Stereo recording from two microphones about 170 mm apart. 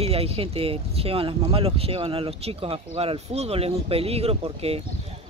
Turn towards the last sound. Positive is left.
turn(degrees=-35)  # may be behind; listen again after turning